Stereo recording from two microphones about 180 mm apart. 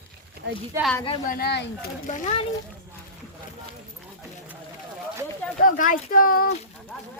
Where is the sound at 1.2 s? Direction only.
60° left (ahead or behind).